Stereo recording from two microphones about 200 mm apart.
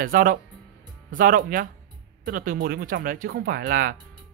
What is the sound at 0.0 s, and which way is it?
Speech, 45° right (ahead or behind).